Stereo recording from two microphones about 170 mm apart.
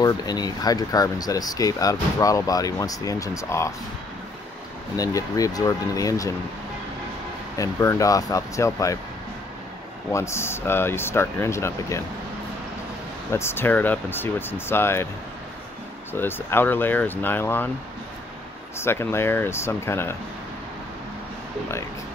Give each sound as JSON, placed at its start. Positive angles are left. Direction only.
{"t": 0.0, "sound": "speech", "side_deg": 25}
{"t": 4.9, "sound": "speech", "side_deg": 20}
{"t": 7.5, "sound": "speech", "side_deg": 20}
{"t": 10.1, "sound": "speech", "side_deg": 15}
{"t": 13.3, "sound": "speech", "side_deg": 15}
{"t": 16.1, "sound": "speech", "side_deg": 10}
{"t": 18.8, "sound": "speech", "side_deg": 15}